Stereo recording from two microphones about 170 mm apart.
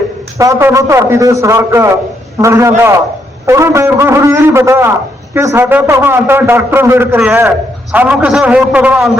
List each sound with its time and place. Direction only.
0.3 s a man's voice: 20° right (ahead or behind)